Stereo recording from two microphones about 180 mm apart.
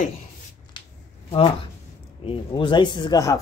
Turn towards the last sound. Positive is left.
turn(degrees=20)  # may be behind; listen again after turning